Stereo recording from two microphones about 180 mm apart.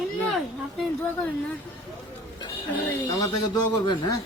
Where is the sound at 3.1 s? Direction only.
20° left (ahead or behind).